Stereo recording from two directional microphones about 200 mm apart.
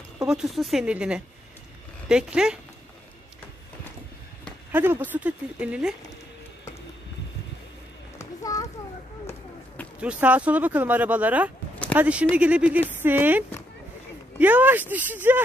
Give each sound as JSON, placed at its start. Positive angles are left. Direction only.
{"t": 0.3, "sound": "speech", "side_deg": 0}
{"t": 4.7, "sound": "speech", "side_deg": -10}
{"t": 8.2, "sound": "a sound", "side_deg": 15}
{"t": 9.9, "sound": "speech", "side_deg": -5}
{"t": 14.4, "sound": "speech", "side_deg": -10}